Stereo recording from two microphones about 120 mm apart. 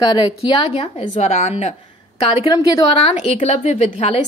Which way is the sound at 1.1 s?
65° left (ahead or behind).